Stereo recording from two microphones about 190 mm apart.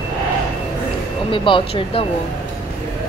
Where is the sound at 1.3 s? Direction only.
25° left (ahead or behind).